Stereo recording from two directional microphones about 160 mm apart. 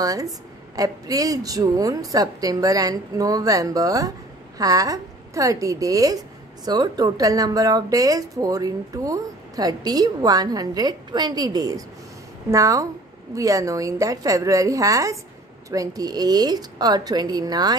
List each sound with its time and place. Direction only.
0.0 s a woman's voice: 20° right (ahead or behind)